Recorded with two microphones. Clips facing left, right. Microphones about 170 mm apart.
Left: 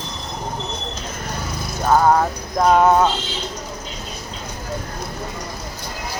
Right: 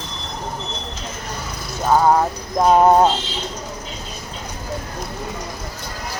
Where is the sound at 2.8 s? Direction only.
35° right (ahead or behind).